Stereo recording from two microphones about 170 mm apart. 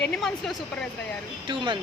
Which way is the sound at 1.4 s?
25° right (ahead or behind).